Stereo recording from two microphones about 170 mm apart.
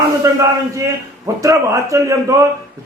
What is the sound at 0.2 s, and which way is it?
A man's voice, 15° right (ahead or behind).